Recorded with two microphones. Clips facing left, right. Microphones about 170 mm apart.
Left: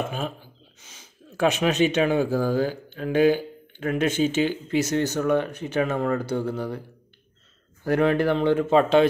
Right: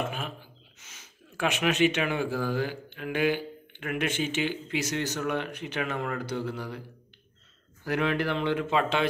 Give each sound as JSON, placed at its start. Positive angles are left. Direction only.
{"t": 0.7, "sound": "speech", "side_deg": 35}
{"t": 7.8, "sound": "speech", "side_deg": 50}